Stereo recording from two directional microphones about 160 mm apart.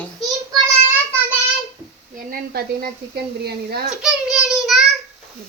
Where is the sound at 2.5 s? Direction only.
80° right.